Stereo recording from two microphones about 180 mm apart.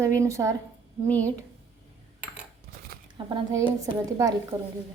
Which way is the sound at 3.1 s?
25° right (ahead or behind).